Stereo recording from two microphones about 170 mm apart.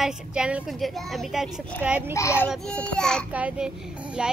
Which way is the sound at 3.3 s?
10° right (ahead or behind).